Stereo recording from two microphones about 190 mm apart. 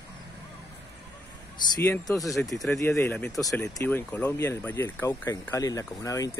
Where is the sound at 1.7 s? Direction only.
15° left (ahead or behind).